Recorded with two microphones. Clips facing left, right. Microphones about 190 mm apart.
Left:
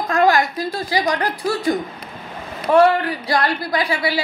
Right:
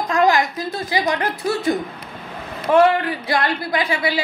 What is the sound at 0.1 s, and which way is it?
Speech, 20° right (ahead or behind).